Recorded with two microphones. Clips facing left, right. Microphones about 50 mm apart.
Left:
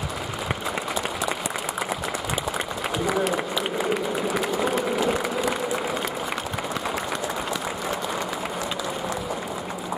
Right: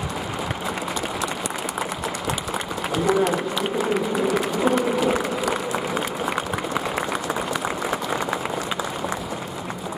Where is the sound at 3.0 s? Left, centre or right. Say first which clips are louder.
Right 4 dB; centre.